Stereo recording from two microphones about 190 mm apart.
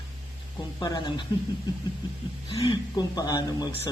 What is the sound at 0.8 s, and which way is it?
Speech, 25° left (ahead or behind).